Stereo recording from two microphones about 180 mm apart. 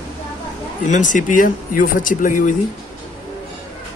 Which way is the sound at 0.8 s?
45° left (ahead or behind).